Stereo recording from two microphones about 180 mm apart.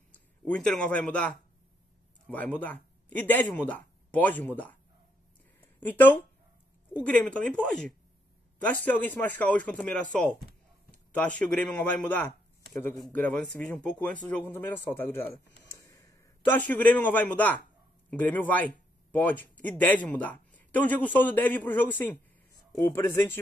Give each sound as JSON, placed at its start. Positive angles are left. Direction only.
{"t": 0.1, "sound": "speech", "side_deg": 5}
{"t": 5.8, "sound": "a man's voice", "side_deg": 10}
{"t": 13.0, "sound": "a man's voice", "side_deg": 5}
{"t": 15.6, "sound": "a sound", "side_deg": 15}
{"t": 18.1, "sound": "a man's voice", "side_deg": 10}